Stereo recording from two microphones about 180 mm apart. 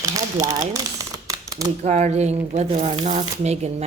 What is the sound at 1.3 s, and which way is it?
Typewriter, 20° right (ahead or behind).